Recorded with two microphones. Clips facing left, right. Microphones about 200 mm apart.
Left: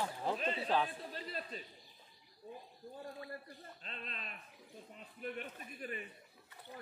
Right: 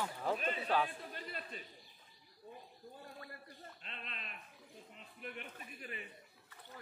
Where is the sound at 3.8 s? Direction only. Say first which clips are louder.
Left 4 dB; 40° left (ahead or behind).